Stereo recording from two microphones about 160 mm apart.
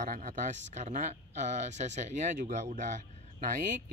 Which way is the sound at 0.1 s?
50° right (ahead or behind).